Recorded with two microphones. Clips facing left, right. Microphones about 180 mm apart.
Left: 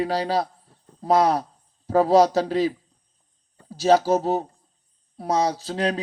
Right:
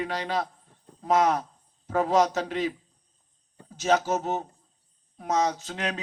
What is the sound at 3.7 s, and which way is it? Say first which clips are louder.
Speech: left 6 dB; 35° left (ahead or behind).